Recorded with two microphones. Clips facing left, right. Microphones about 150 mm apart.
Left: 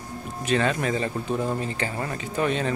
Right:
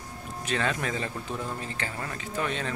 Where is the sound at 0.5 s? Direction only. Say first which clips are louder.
Left 6 dB; 5° left (ahead or behind).